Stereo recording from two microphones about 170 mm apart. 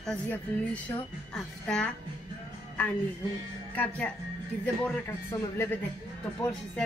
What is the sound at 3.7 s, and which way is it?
Speech, 10° left (ahead or behind).